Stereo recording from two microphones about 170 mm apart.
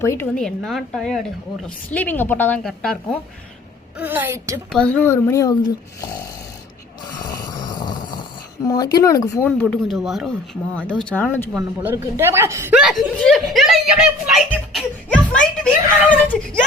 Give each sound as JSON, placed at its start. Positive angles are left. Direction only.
{"t": 0.0, "sound": "speech", "side_deg": 15}
{"t": 0.3, "sound": "speech", "side_deg": 5}
{"t": 3.9, "sound": "a woman's voice", "side_deg": -10}
{"t": 4.7, "sound": "speech", "side_deg": 5}
{"t": 7.1, "sound": "a sound", "side_deg": 25}
{"t": 8.6, "sound": "speech", "side_deg": 20}
{"t": 9.5, "sound": "speech", "side_deg": 5}
{"t": 11.5, "sound": "a woman's voice", "side_deg": -10}
{"t": 12.7, "sound": "speech", "side_deg": 0}